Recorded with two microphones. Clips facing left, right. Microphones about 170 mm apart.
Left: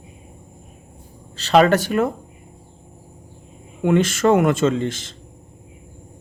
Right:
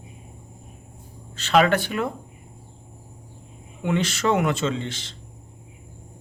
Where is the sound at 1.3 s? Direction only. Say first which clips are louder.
Left 4 dB; 35° left (ahead or behind).